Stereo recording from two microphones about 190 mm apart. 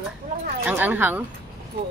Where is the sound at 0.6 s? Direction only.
10° right (ahead or behind).